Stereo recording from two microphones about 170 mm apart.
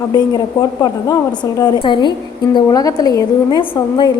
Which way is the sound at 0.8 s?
20° left (ahead or behind).